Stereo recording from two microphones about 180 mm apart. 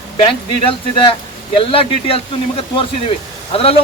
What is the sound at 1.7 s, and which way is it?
Speech, 30° left (ahead or behind).